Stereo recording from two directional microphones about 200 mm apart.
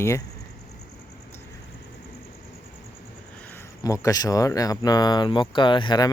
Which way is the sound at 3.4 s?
10° left (ahead or behind).